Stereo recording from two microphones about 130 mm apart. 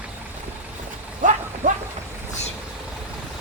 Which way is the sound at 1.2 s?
90° right.